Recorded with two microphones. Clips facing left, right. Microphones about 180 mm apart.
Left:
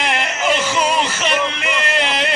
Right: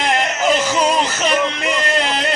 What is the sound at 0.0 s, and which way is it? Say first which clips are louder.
Music: right 3 dB; 35° right (ahead or behind).